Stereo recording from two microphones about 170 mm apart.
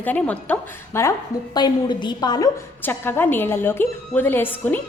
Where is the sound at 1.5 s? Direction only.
25° left (ahead or behind).